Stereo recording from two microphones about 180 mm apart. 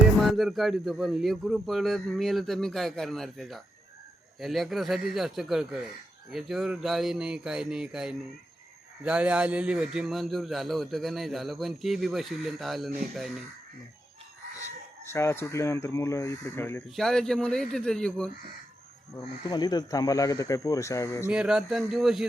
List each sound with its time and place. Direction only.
0.2 s a man's voice: centre (ahead or behind)
15.0 s speech: 15° left (ahead or behind)
16.9 s a man's voice: centre (ahead or behind)
19.1 s speech: 20° left (ahead or behind)
21.2 s a man's voice: 5° right (ahead or behind)